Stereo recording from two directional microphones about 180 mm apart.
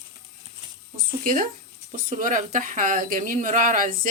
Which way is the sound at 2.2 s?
45° right (ahead or behind).